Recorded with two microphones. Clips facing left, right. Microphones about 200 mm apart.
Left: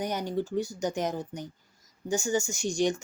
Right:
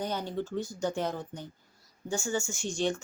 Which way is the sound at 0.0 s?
15° left (ahead or behind).